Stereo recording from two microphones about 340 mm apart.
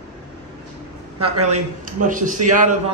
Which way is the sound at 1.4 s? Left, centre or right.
Centre.